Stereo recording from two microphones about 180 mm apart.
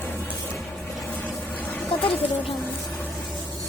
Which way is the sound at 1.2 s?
10° left (ahead or behind).